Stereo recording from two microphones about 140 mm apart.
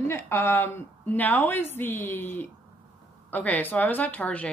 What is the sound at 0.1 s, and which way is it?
A woman's voice, 15° left (ahead or behind).